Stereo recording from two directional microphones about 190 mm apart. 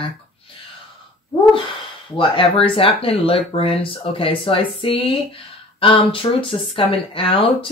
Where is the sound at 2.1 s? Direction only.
25° left (ahead or behind).